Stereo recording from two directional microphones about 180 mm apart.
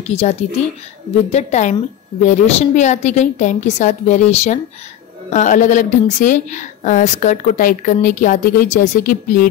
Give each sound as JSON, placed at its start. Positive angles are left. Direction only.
{"t": 0.1, "sound": "a woman's voice", "side_deg": 35}